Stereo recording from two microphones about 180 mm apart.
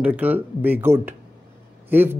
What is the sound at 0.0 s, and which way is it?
Speech, 10° right (ahead or behind).